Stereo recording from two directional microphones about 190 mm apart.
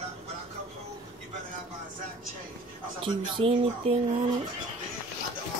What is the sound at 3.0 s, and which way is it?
Speech, 25° right (ahead or behind).